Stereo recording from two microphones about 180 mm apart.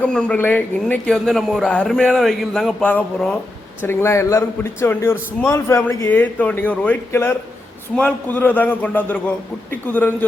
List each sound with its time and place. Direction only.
0.0 s a man's voice: 5° left (ahead or behind)